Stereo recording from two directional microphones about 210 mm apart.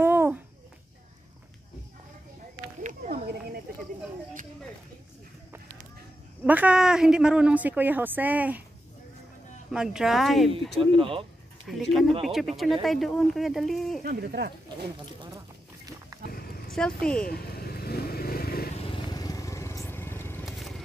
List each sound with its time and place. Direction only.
0.0 s a sound: 10° right (ahead or behind)
2.8 s snake: 40° right (ahead or behind)
6.4 s a woman's voice: 5° right (ahead or behind)
9.7 s speech: centre (ahead or behind)
10.8 s speech: 25° right (ahead or behind)
11.6 s speech: centre (ahead or behind)
14.0 s speech: 45° right (ahead or behind)
16.1 s a sound: 15° right (ahead or behind)
16.7 s speech: 5° left (ahead or behind)
17.3 s vehicle: 45° left (ahead or behind)
18.8 s vehicle: 25° left (ahead or behind)
20.4 s vehicle: centre (ahead or behind)